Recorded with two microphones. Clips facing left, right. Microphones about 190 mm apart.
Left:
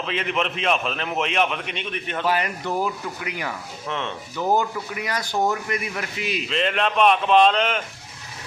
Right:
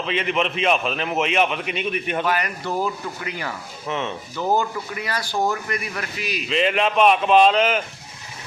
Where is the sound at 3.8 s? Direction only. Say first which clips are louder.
Right 3 dB; 5° right (ahead or behind).